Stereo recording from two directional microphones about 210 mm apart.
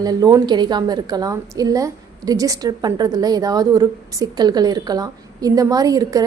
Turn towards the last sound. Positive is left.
turn(degrees=-15)  # may be behind; listen again after turning